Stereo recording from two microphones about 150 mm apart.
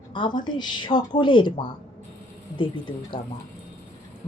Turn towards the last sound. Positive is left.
turn(degrees=35)  # may be behind; listen again after turning